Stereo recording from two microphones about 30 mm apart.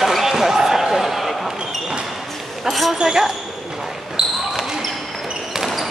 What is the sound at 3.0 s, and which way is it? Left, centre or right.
Speech, centre.